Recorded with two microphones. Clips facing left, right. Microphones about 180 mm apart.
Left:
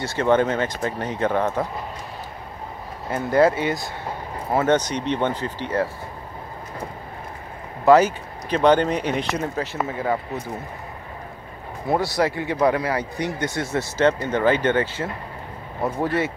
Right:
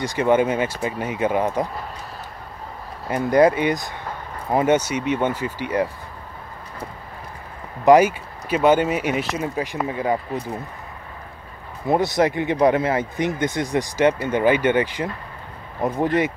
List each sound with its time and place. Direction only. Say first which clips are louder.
0.0 s speech: right 1 dB; 15° right (ahead or behind)
3.1 s speech: right 2 dB; 15° right (ahead or behind)
7.8 s speech: right 1 dB; 10° right (ahead or behind)
11.9 s speech: right 3 dB; 20° right (ahead or behind)